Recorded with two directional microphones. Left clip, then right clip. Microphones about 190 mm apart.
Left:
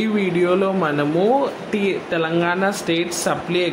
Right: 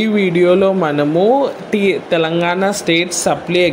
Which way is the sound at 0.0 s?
25° right (ahead or behind).